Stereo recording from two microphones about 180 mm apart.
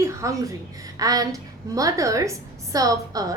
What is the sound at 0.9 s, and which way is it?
A woman's voice, 20° right (ahead or behind).